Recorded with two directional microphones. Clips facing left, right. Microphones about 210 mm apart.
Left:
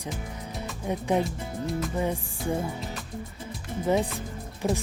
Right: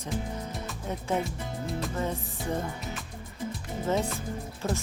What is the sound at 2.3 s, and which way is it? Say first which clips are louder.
Music: left 3 dB; 5° left (ahead or behind).